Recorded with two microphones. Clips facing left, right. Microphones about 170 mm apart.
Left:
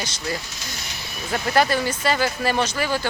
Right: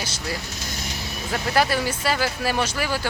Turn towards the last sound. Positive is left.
turn(degrees=-5)  # may be behind; listen again after turning